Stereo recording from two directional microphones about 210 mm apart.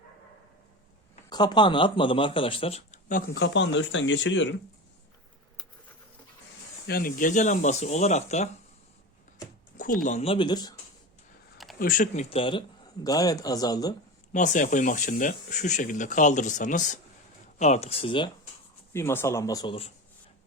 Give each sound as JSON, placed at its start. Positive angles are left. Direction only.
{"t": 1.3, "sound": "speech", "side_deg": 20}
{"t": 6.8, "sound": "speech", "side_deg": 45}
{"t": 9.7, "sound": "speech", "side_deg": 40}
{"t": 11.5, "sound": "a sound", "side_deg": 0}
{"t": 11.8, "sound": "speech", "side_deg": 40}
{"t": 14.3, "sound": "speech", "side_deg": 35}
{"t": 18.9, "sound": "speech", "side_deg": 10}